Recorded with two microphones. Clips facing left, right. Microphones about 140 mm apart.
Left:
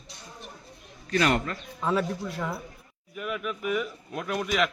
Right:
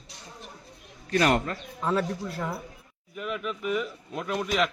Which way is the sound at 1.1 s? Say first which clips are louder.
Right 1 dB; 40° right (ahead or behind).